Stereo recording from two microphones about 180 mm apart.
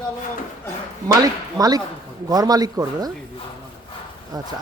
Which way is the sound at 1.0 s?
20° right (ahead or behind).